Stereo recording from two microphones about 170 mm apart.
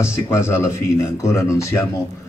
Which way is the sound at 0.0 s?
15° left (ahead or behind).